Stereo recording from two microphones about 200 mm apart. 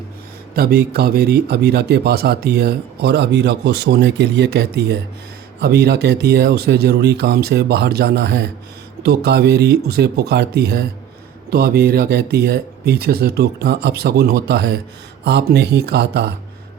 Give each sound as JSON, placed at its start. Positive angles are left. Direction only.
{"t": 0.5, "sound": "a man's voice", "side_deg": -50}